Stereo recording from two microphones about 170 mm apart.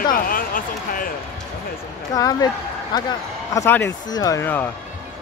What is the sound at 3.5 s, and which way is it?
Speech, 15° left (ahead or behind).